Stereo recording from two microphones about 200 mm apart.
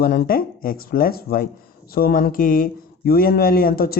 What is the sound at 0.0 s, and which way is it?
Speech, 50° left (ahead or behind).